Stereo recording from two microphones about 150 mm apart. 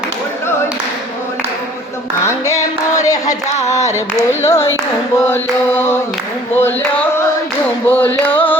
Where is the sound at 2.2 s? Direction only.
20° left (ahead or behind).